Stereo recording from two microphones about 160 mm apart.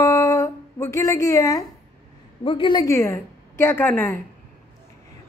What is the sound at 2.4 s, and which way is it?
Speech, 35° left (ahead or behind).